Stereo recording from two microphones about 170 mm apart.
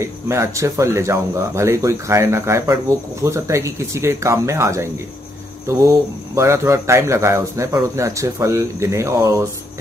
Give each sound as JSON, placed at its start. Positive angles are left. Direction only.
{"t": 0.0, "sound": "speech", "side_deg": -15}